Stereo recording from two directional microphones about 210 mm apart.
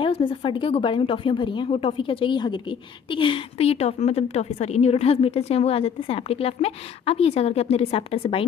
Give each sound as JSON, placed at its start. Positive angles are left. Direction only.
{"t": 0.0, "sound": "a woman's voice", "side_deg": 25}